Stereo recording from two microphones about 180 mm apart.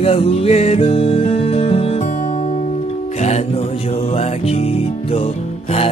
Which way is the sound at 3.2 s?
35° left (ahead or behind).